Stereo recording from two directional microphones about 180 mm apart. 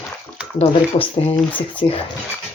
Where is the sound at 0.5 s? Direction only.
30° left (ahead or behind).